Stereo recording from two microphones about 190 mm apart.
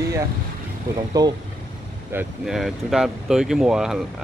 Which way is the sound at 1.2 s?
20° right (ahead or behind).